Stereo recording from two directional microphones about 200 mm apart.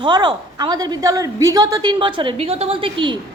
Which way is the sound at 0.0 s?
20° right (ahead or behind).